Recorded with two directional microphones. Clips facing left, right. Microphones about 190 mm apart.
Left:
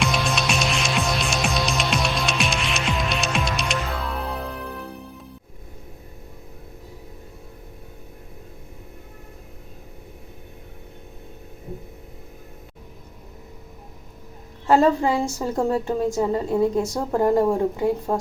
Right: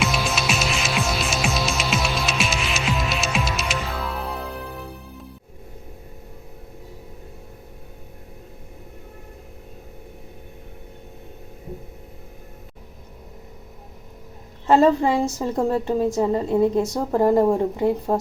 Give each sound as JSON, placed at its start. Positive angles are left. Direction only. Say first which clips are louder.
{"t": 0.0, "sound": "music", "louder": "even", "side_deg": 0}
{"t": 14.7, "sound": "a woman's voice", "louder": "right 1 dB", "side_deg": 0}